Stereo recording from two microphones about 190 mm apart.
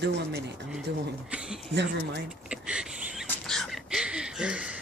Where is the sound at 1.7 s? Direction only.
65° right (ahead or behind).